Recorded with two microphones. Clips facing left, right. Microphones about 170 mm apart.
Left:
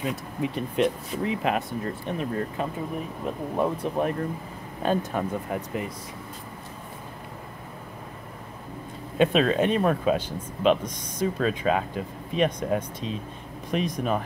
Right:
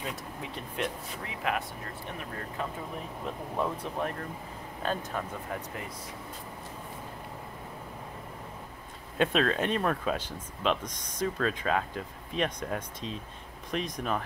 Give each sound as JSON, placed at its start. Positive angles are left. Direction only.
{"t": 0.0, "sound": "speech", "side_deg": 10}
{"t": 0.7, "sound": "speech", "side_deg": 25}
{"t": 9.2, "sound": "speech", "side_deg": 5}